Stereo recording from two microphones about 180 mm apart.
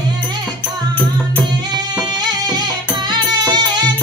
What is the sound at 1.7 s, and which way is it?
Music, 20° right (ahead or behind).